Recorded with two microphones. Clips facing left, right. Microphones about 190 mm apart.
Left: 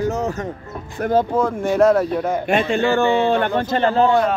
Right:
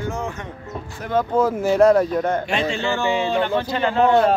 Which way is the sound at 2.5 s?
55° left (ahead or behind).